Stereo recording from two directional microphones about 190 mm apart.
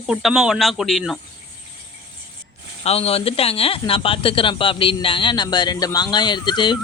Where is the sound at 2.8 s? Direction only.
30° left (ahead or behind).